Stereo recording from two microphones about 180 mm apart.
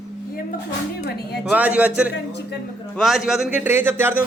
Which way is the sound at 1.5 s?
10° right (ahead or behind).